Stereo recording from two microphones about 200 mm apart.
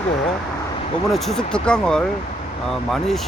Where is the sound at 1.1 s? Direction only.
Centre (ahead or behind).